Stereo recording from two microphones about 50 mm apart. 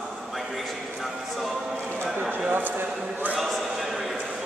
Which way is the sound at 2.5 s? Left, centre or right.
Right.